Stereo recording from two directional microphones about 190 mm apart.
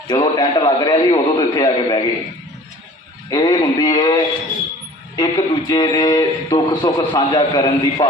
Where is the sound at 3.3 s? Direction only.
20° left (ahead or behind).